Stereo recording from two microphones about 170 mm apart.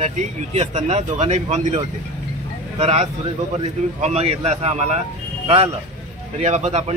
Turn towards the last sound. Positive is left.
turn(degrees=-40)  # may be behind; listen again after turning